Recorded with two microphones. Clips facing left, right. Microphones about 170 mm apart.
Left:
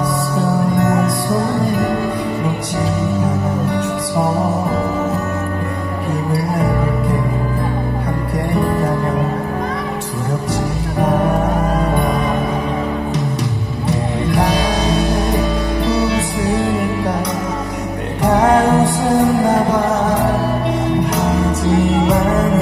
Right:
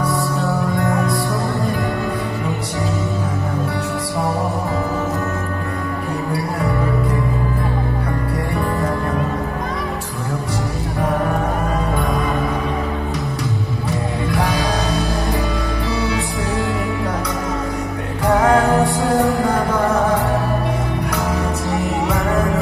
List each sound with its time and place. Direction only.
0.4 s music: 20° left (ahead or behind)
11.0 s music: 20° left (ahead or behind)
16.1 s music: 20° left (ahead or behind)
18.2 s music: 20° left (ahead or behind)
22.1 s music: 20° left (ahead or behind)